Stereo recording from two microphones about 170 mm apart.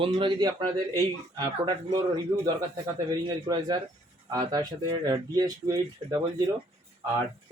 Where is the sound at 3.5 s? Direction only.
25° right (ahead or behind).